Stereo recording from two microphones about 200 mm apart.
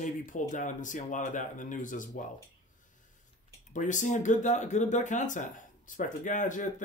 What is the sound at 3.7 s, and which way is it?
Speech, 40° left (ahead or behind).